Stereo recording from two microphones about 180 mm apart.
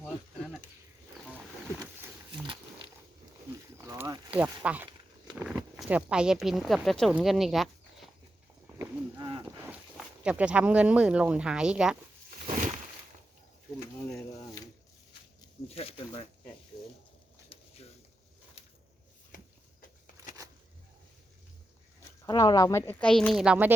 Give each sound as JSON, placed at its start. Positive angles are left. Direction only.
{"t": 3.8, "sound": "a sound", "side_deg": -15}
{"t": 5.5, "sound": "speech", "side_deg": -5}
{"t": 8.8, "sound": "livestock", "side_deg": -25}
{"t": 10.2, "sound": "speech", "side_deg": -5}
{"t": 12.5, "sound": "a sound", "side_deg": -45}
{"t": 15.7, "sound": "snake", "side_deg": 35}
{"t": 22.3, "sound": "speech", "side_deg": 20}